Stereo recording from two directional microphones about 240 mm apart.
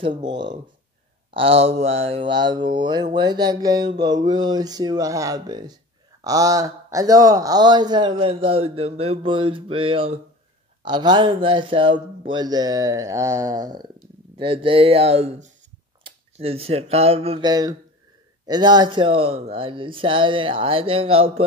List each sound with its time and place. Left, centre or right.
0.0 s a man's voice: centre